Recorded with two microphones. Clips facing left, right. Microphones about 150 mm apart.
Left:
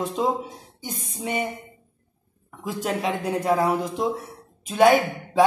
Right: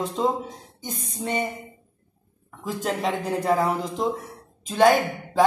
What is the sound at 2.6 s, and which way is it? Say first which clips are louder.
Speech: even; 5° left (ahead or behind).